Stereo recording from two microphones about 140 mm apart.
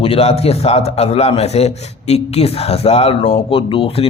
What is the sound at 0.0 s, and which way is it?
A man's voice, 45° left (ahead or behind).